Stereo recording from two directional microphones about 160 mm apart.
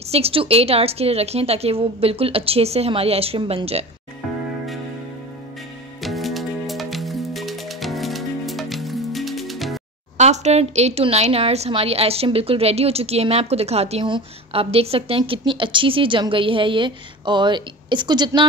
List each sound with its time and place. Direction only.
0.1 s speech: 35° right (ahead or behind)
6.0 s music: centre (ahead or behind)
10.1 s speech: 45° right (ahead or behind); by 18.5 s 30° right (ahead or behind)